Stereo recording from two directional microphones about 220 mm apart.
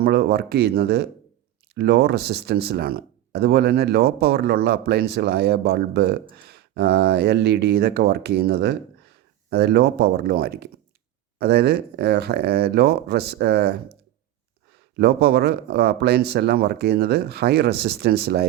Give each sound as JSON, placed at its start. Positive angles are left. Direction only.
{"t": 0.0, "sound": "speech", "side_deg": -45}
{"t": 14.9, "sound": "speech", "side_deg": -50}